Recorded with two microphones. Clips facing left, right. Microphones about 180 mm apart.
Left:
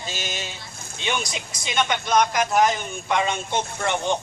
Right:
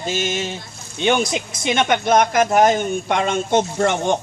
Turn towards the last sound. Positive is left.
turn(degrees=-45)  # may be behind; listen again after turning